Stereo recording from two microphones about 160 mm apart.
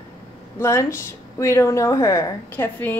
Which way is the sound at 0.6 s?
15° left (ahead or behind).